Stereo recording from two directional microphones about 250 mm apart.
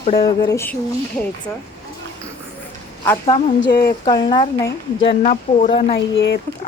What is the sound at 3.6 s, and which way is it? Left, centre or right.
Speech, left.